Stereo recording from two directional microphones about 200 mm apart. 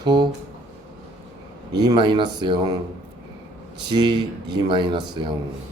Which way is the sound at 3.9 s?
20° right (ahead or behind).